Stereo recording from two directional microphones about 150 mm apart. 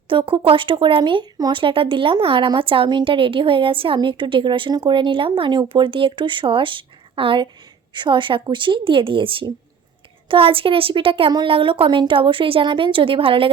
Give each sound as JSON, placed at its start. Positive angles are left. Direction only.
{"t": 0.1, "sound": "speech", "side_deg": -35}